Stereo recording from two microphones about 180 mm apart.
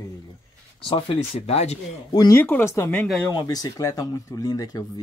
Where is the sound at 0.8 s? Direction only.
30° left (ahead or behind).